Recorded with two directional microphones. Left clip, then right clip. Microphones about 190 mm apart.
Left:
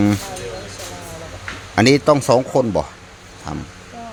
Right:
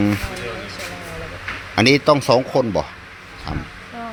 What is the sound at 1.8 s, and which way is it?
Speech, 10° left (ahead or behind).